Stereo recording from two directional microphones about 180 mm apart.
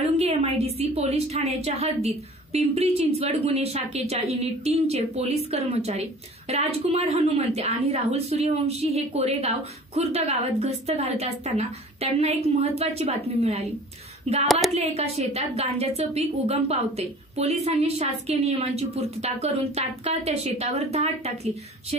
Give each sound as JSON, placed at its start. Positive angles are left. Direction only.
{"t": 0.2, "sound": "a woman's voice", "side_deg": -35}